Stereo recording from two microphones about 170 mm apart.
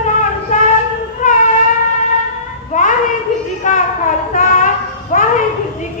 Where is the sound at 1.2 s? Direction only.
50° left (ahead or behind).